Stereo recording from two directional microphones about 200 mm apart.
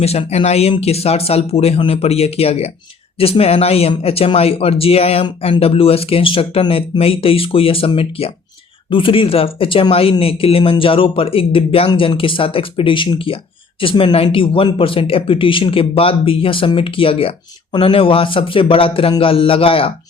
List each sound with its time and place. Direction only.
0.0 s speech: 30° left (ahead or behind)